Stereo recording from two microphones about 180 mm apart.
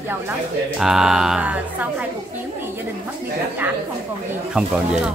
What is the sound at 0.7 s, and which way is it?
Speech, centre (ahead or behind).